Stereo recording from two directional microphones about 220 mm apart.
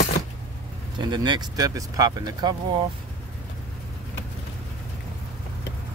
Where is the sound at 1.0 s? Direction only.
20° right (ahead or behind).